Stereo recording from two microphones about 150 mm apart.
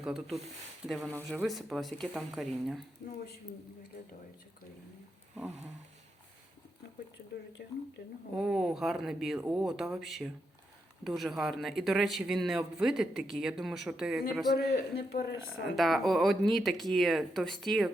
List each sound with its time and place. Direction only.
0.0 s speech: 5° right (ahead or behind)
8.4 s speech: 5° right (ahead or behind)
14.7 s a man's voice: 90° left
15.6 s speech: centre (ahead or behind)